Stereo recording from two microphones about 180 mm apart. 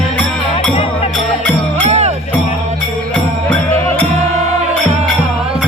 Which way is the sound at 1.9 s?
35° right (ahead or behind).